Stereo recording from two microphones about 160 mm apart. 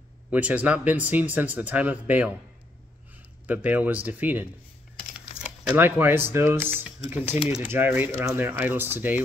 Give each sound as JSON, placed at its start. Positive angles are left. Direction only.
{"t": 0.3, "sound": "speech", "side_deg": -10}
{"t": 3.4, "sound": "speech", "side_deg": -10}
{"t": 7.2, "sound": "speech", "side_deg": 40}
{"t": 7.6, "sound": "speech", "side_deg": -10}